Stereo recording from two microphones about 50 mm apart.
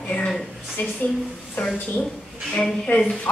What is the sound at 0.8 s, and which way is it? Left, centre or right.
Speech, left.